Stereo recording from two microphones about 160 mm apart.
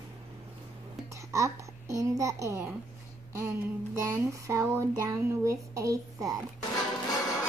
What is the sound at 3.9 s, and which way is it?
A child's voice, 20° right (ahead or behind).